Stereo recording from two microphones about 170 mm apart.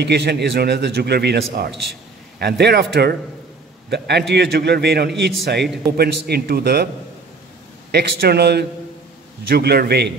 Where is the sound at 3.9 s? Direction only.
80° right.